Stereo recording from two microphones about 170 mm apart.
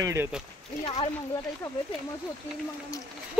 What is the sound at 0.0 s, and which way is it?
Speech, 15° right (ahead or behind).